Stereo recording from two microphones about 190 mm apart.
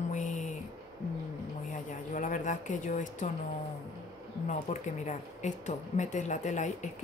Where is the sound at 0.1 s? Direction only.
40° left (ahead or behind).